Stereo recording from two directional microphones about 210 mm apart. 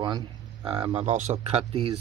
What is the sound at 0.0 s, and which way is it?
Speech, 20° right (ahead or behind).